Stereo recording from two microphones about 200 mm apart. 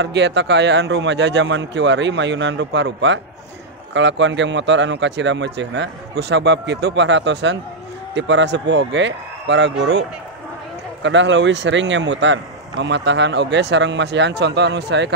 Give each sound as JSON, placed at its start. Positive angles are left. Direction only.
{"t": 0.0, "sound": "speech", "side_deg": -60}
{"t": 11.0, "sound": "speech", "side_deg": -65}